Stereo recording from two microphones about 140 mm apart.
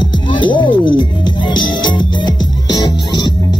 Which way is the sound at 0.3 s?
35° left (ahead or behind).